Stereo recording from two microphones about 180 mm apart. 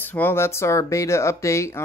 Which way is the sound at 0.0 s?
10° left (ahead or behind).